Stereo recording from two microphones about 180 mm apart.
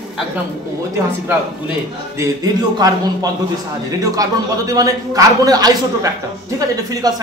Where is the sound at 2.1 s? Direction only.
20° right (ahead or behind).